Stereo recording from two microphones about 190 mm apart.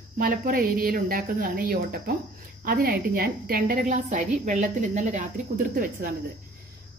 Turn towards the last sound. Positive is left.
turn(degrees=-45)  # may be behind; listen again after turning